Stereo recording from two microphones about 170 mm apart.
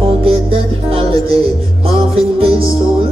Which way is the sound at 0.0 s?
35° right (ahead or behind).